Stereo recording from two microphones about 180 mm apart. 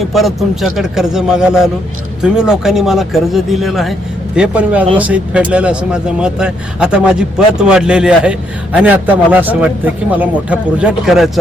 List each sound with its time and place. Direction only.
0.0 s speech: centre (ahead or behind)